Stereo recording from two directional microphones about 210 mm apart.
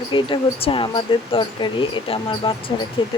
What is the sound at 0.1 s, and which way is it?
Speech, 25° left (ahead or behind).